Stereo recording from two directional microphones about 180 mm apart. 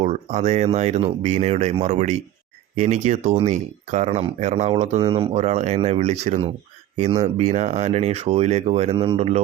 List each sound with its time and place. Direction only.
0.0 s speech: 40° right (ahead or behind)
4.9 s speech: 25° right (ahead or behind)
5.4 s speech: 40° right (ahead or behind)